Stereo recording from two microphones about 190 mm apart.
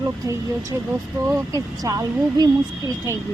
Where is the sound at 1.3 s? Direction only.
20° right (ahead or behind).